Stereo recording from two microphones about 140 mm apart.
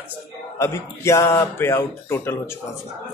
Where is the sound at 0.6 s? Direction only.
20° left (ahead or behind).